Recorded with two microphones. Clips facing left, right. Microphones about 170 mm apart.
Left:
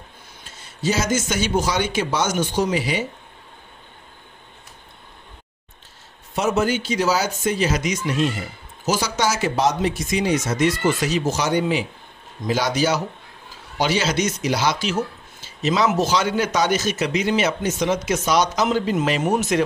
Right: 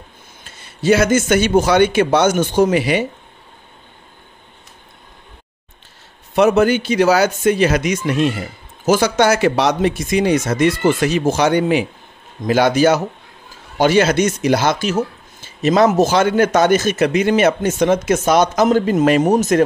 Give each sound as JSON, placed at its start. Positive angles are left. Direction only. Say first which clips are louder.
{"t": 0.8, "sound": "speech", "louder": "right 8 dB", "side_deg": -60}
{"t": 6.3, "sound": "a man's voice", "louder": "right 8 dB", "side_deg": -60}